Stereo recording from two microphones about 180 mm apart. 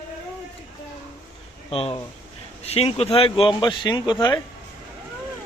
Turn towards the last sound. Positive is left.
turn(degrees=20)  # may be behind; listen again after turning